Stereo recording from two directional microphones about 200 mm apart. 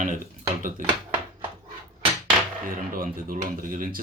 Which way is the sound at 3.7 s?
45° right (ahead or behind).